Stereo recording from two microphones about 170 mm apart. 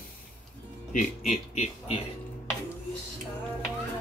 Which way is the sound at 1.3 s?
40° left (ahead or behind).